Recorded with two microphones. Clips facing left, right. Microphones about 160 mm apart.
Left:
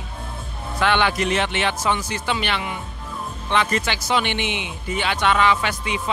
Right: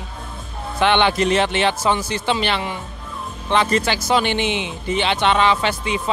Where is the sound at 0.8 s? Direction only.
25° right (ahead or behind).